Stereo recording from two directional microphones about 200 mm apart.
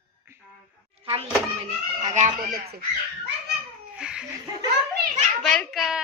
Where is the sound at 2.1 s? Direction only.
35° right (ahead or behind).